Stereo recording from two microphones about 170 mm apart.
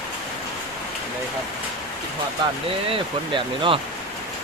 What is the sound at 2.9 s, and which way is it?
Speech, 30° right (ahead or behind).